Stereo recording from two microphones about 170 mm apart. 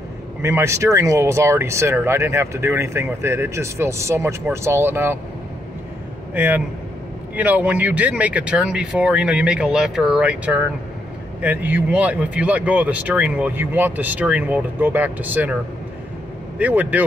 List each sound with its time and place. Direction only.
0.4 s speech: 15° right (ahead or behind)
6.3 s speech: 10° right (ahead or behind)
16.5 s speech: 10° right (ahead or behind)